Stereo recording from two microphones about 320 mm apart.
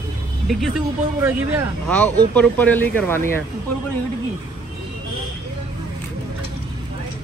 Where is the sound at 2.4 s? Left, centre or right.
Centre.